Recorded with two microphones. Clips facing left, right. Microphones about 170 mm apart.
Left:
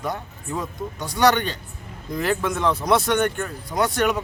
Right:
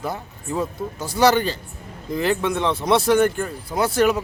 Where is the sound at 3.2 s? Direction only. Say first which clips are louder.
Right 4 dB; 5° right (ahead or behind).